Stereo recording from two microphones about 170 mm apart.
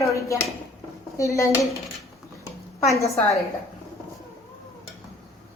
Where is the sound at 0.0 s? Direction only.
20° left (ahead or behind).